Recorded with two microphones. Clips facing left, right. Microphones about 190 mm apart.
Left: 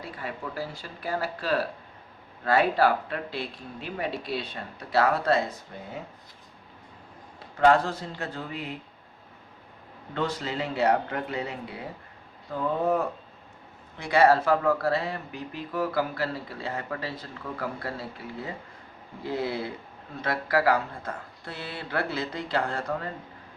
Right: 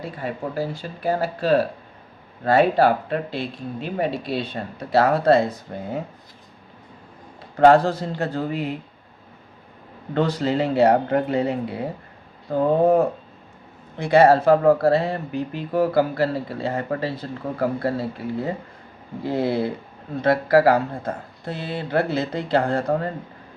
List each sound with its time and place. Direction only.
0.0 s speech: 25° right (ahead or behind)
7.5 s speech: 35° right (ahead or behind)
10.2 s speech: 35° right (ahead or behind)
19.3 s speech: 30° right (ahead or behind)
21.4 s speech: 20° right (ahead or behind); by 23.1 s 40° right (ahead or behind)